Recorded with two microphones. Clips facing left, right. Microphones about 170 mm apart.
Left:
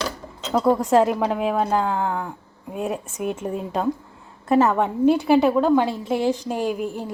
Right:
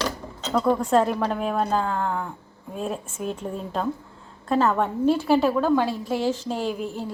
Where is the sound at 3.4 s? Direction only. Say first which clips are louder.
Left 4 dB; 15° left (ahead or behind).